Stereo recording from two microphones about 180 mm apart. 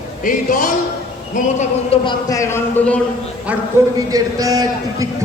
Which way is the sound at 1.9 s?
25° left (ahead or behind).